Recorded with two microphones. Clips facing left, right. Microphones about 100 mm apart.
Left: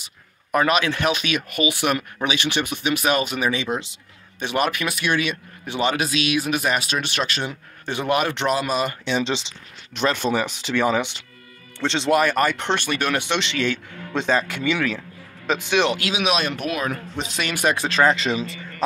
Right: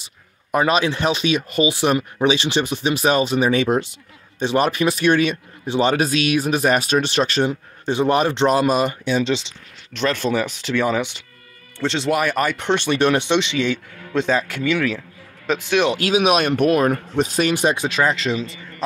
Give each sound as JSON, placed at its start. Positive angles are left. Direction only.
{"t": 0.0, "sound": "speech", "side_deg": -25}
{"t": 3.5, "sound": "speech", "side_deg": -45}
{"t": 4.4, "sound": "speech", "side_deg": -30}
{"t": 9.2, "sound": "speech", "side_deg": 0}
{"t": 9.9, "sound": "speech", "side_deg": 15}
{"t": 10.2, "sound": "speech", "side_deg": 0}
{"t": 12.8, "sound": "speech", "side_deg": -30}
{"t": 14.1, "sound": "speech", "side_deg": -5}
{"t": 16.0, "sound": "speech", "side_deg": -40}
{"t": 17.6, "sound": "speech", "side_deg": -25}
{"t": 17.8, "sound": "speech", "side_deg": -5}